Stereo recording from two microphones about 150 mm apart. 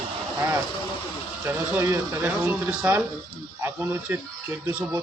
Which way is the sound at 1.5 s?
15° right (ahead or behind).